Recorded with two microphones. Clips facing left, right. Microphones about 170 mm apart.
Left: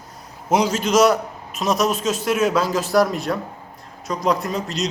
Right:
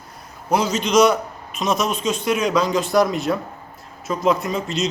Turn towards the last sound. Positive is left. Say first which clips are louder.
# right 1 dB
turn(degrees=0)  # may be behind; listen again after turning